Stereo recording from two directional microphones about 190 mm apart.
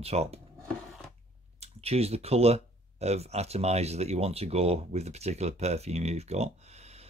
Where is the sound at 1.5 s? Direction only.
35° right (ahead or behind).